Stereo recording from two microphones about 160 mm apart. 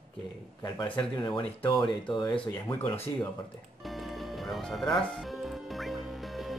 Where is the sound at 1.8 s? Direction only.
25° left (ahead or behind).